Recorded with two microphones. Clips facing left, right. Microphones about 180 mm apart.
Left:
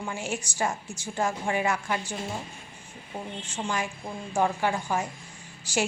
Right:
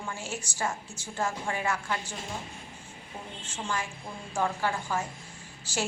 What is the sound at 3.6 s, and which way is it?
A woman's voice, 15° left (ahead or behind).